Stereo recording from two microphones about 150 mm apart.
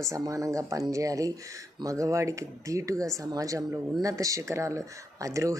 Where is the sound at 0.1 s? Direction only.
20° right (ahead or behind).